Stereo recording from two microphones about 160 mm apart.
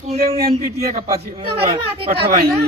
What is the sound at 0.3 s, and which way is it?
Speech, 35° right (ahead or behind).